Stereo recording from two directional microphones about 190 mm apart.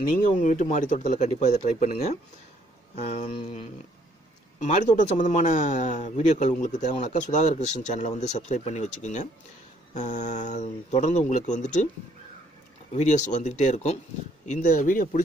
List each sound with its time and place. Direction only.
0.3 s speech: 40° left (ahead or behind)
3.1 s speech: 30° left (ahead or behind)
4.6 s speech: 35° left (ahead or behind)
12.9 s speech: 40° left (ahead or behind)